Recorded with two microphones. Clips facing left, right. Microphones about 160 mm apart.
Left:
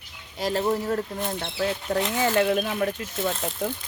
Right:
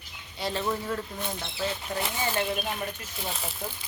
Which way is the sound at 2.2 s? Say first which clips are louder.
Left 8 dB; 90° left.